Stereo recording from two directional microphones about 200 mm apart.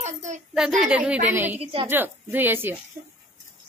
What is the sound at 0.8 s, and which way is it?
Speech, 5° right (ahead or behind).